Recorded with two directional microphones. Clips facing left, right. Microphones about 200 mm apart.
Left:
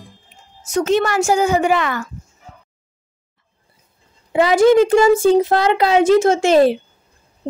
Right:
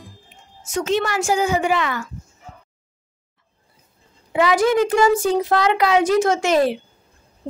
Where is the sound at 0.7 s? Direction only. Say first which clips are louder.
Left 4 dB; 45° left (ahead or behind).